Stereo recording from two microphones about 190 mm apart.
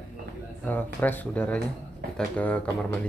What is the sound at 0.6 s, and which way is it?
Speech, 10° left (ahead or behind).